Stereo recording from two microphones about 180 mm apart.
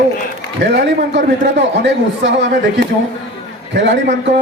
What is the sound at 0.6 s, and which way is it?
A man's voice, 70° right (ahead or behind).